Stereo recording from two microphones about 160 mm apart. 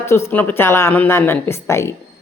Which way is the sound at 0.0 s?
15° left (ahead or behind).